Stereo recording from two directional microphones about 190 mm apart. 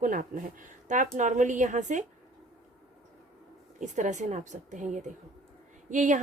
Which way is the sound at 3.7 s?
40° right (ahead or behind).